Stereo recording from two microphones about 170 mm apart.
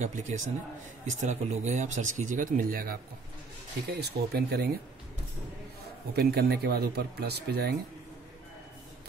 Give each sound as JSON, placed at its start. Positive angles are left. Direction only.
{"t": 0.0, "sound": "speech", "side_deg": -45}
{"t": 3.9, "sound": "speech", "side_deg": -70}
{"t": 6.1, "sound": "speech", "side_deg": -70}